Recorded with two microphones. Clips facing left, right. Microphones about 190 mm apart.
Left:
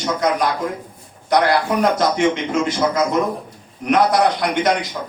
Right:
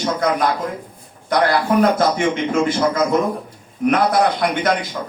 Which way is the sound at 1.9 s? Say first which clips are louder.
Even; 55° right (ahead or behind).